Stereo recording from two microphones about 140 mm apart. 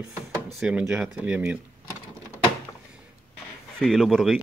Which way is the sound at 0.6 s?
5° right (ahead or behind).